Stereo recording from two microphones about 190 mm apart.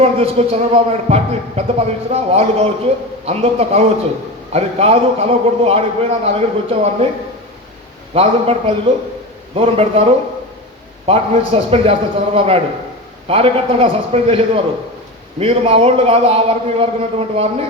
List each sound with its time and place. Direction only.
0.0 s a man's voice: 35° right (ahead or behind)
8.1 s a man's voice: 30° right (ahead or behind)